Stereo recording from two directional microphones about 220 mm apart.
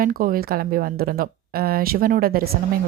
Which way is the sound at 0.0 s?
40° right (ahead or behind).